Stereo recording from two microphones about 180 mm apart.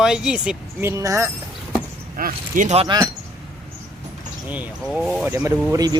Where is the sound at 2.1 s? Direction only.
50° right (ahead or behind).